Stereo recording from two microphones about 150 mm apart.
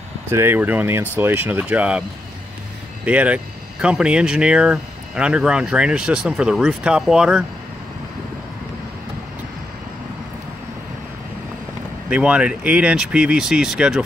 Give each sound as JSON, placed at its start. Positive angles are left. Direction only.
{"t": 0.3, "sound": "speech", "side_deg": -15}
{"t": 3.1, "sound": "speech", "side_deg": -10}
{"t": 12.1, "sound": "speech", "side_deg": -10}